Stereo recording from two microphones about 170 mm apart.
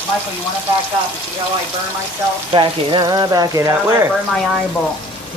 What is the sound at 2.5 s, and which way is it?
Speech, 30° right (ahead or behind).